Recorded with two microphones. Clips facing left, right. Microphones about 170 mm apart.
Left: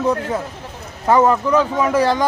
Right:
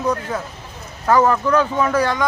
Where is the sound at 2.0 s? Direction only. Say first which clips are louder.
Left 3 dB; 30° left (ahead or behind).